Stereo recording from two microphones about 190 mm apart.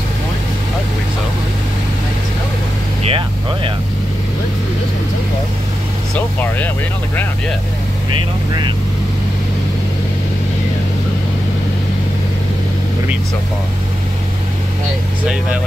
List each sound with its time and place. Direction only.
3.0 s vehicle: 30° right (ahead or behind)
6.1 s speech: 10° left (ahead or behind)